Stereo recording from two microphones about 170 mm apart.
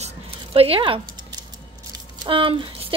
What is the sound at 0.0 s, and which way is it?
Scissors, 35° right (ahead or behind).